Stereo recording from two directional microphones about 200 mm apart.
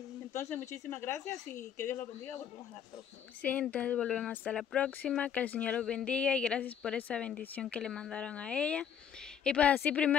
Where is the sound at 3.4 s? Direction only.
5° left (ahead or behind).